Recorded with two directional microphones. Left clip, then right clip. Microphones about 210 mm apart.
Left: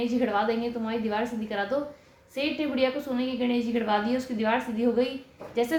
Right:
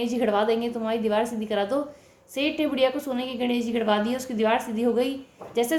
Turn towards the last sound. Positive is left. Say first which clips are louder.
# right 2 dB
turn(degrees=-40)  # may be behind; listen again after turning